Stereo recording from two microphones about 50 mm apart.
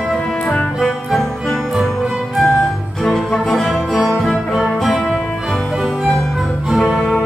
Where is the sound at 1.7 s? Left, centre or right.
Centre.